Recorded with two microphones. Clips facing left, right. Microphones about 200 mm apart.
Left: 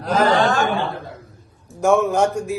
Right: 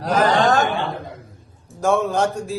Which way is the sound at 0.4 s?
40° right (ahead or behind).